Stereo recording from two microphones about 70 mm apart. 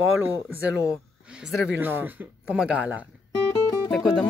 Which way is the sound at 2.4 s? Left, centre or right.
Centre.